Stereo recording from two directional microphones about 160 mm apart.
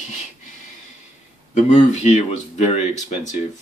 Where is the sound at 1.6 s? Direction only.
45° left (ahead or behind).